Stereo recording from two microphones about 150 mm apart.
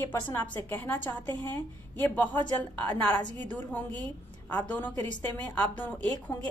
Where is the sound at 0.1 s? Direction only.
15° left (ahead or behind).